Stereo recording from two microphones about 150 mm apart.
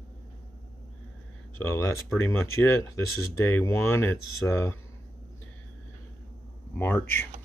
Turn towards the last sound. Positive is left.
turn(degrees=15)  # may be behind; listen again after turning